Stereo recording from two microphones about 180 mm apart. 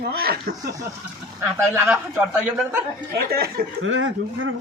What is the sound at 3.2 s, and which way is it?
Speech, 60° right (ahead or behind).